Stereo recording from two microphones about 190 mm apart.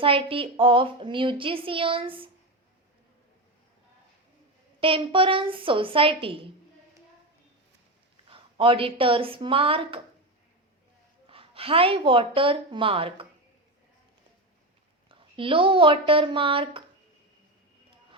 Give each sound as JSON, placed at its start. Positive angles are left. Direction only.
{"t": 0.0, "sound": "a woman's voice", "side_deg": -30}
{"t": 4.8, "sound": "a woman's voice", "side_deg": -30}
{"t": 8.1, "sound": "a woman's voice", "side_deg": -25}
{"t": 11.3, "sound": "a woman's voice", "side_deg": -30}
{"t": 15.1, "sound": "a woman's voice", "side_deg": -25}